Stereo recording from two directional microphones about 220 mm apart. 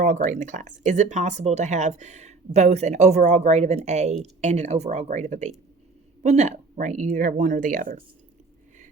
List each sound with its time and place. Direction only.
0.0 s speech: 35° right (ahead or behind)